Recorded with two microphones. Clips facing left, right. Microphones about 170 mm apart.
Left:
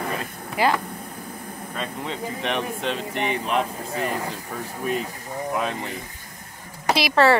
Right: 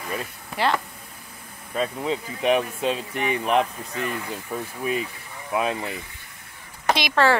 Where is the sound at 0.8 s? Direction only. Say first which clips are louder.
Left 10 dB; 50° left (ahead or behind).